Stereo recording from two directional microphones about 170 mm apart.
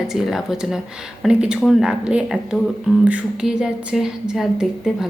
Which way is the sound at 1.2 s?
5° right (ahead or behind).